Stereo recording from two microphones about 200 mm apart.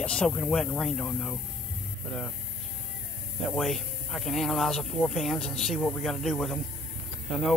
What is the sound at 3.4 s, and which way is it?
Speech, centre (ahead or behind).